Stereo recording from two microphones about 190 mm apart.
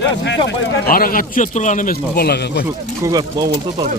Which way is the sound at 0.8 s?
50° left (ahead or behind).